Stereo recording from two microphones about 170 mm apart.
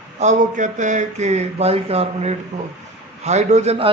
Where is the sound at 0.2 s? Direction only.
45° right (ahead or behind).